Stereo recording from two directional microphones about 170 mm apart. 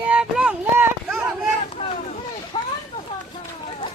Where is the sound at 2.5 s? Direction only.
30° left (ahead or behind).